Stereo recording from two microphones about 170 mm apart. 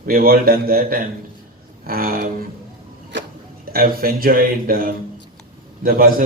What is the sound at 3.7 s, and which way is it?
A man's voice, 60° right (ahead or behind).